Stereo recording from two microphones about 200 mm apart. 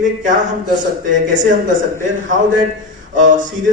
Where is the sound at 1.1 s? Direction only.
40° right (ahead or behind).